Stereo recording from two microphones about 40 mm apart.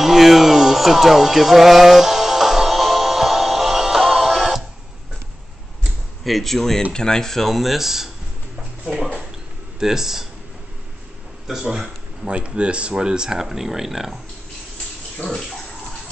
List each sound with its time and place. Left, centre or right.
0.0 s music: centre
6.2 s speech: centre
6.9 s speech: centre
9.8 s speech: centre
11.4 s speech: centre
12.4 s speech: right; by 14.1 s centre